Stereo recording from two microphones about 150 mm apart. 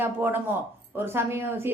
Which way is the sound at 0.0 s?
15° right (ahead or behind).